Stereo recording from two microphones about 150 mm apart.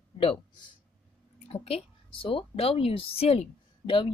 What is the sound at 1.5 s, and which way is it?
A woman's voice, 40° left (ahead or behind).